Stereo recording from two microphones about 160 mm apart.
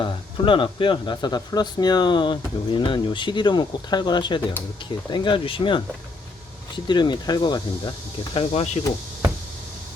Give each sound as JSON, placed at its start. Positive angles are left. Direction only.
{"t": 0.0, "sound": "speech", "side_deg": 30}
{"t": 6.8, "sound": "speech", "side_deg": 30}